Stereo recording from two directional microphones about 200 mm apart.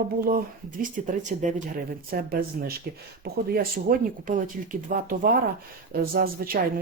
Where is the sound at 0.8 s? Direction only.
40° right (ahead or behind).